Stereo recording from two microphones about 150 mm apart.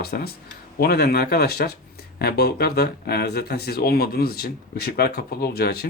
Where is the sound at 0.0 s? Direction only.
90° left.